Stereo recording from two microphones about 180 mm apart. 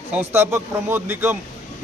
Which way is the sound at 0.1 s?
15° right (ahead or behind).